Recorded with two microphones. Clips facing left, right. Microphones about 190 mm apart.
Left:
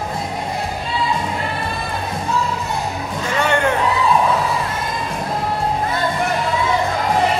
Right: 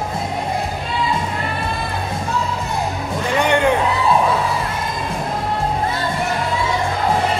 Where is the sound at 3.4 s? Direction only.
15° right (ahead or behind).